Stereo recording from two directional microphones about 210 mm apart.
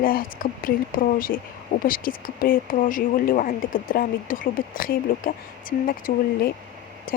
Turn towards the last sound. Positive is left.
turn(degrees=40)  # may be behind; listen again after turning